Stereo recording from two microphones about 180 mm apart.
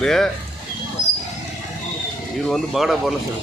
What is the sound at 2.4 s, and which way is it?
Speech, centre (ahead or behind).